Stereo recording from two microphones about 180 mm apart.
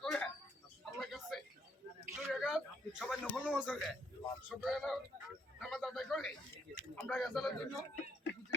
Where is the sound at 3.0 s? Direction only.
Centre (ahead or behind).